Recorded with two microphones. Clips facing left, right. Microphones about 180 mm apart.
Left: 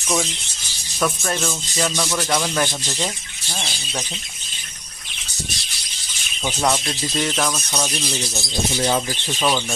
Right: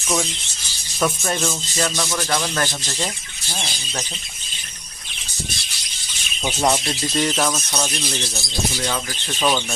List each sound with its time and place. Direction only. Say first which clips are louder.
1.0 s speech: right 1 dB; 5° right (ahead or behind)
6.4 s speech: right 1 dB; 10° right (ahead or behind)
7.2 s speech: right 2 dB; centre (ahead or behind)
8.0 s speech: left 1 dB; 10° left (ahead or behind)
8.7 s speech: left 5 dB; 25° left (ahead or behind)